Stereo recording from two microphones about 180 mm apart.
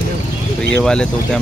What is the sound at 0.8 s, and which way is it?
Speech, 5° left (ahead or behind).